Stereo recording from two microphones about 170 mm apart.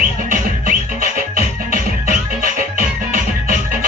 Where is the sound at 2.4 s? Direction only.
50° right (ahead or behind).